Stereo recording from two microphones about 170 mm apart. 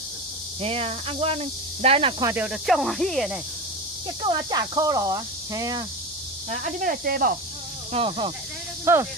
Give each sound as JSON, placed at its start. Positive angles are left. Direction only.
{"t": 0.6, "sound": "speech", "side_deg": -35}
{"t": 2.2, "sound": "speech", "side_deg": -10}
{"t": 4.5, "sound": "cricket", "side_deg": -25}
{"t": 6.5, "sound": "speech", "side_deg": -50}
{"t": 7.9, "sound": "speech", "side_deg": -35}
{"t": 8.9, "sound": "speech", "side_deg": -15}